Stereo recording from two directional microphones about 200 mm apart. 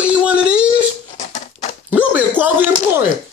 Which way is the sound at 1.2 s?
40° left (ahead or behind).